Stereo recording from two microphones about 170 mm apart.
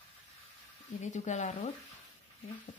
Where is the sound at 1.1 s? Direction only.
45° left (ahead or behind).